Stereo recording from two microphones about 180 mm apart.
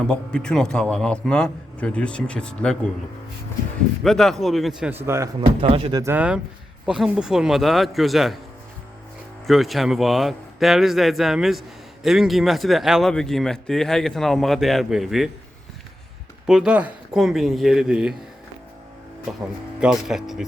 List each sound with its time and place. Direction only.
0.1 s a man's voice: 5° left (ahead or behind)
4.0 s a man's voice: centre (ahead or behind)
5.0 s speech: 15° right (ahead or behind)
5.6 s speech: 30° right (ahead or behind)
6.0 s a man's voice: 10° right (ahead or behind)
9.5 s a man's voice: centre (ahead or behind)
16.5 s a man's voice: 5° right (ahead or behind)
19.8 s a man's voice: 5° right (ahead or behind)